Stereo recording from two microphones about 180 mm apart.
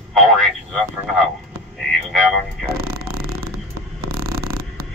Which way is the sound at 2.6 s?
60° right (ahead or behind).